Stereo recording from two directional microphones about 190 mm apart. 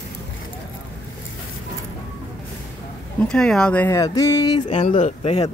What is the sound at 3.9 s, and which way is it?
Music, 20° left (ahead or behind).